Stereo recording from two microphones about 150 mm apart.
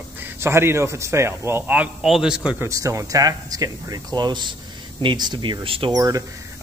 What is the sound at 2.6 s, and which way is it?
Speech, 20° right (ahead or behind).